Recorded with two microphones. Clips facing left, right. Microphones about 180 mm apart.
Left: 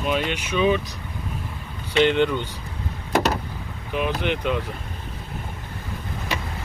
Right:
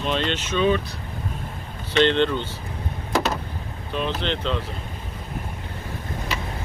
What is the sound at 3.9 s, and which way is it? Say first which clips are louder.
Speech: left 2 dB; 15° left (ahead or behind).